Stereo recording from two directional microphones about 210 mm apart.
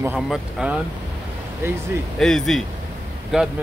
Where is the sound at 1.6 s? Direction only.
10° right (ahead or behind).